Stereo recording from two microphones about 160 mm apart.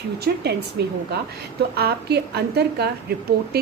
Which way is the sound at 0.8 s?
90° right.